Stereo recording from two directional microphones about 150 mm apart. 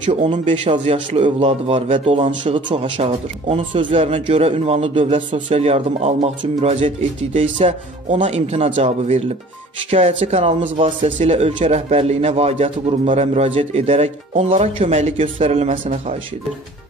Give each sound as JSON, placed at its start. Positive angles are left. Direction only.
{"t": 0.0, "sound": "speech", "side_deg": -45}